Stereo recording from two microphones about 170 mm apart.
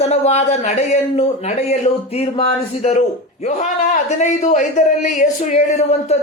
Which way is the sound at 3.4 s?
45° left (ahead or behind).